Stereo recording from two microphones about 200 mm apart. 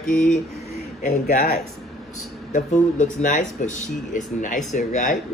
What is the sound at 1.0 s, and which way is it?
Speech, 40° left (ahead or behind).